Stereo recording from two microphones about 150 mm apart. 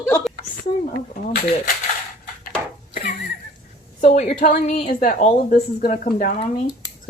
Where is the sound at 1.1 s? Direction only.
60° left (ahead or behind).